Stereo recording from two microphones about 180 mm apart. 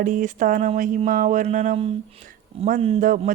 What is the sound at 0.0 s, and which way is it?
Speech, 45° right (ahead or behind).